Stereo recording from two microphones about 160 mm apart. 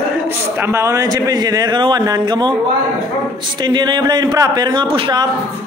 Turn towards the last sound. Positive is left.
turn(degrees=-30)  # may be behind; listen again after turning